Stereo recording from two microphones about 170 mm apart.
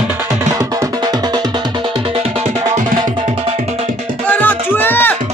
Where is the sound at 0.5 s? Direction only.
20° right (ahead or behind); by 2.5 s 40° right (ahead or behind).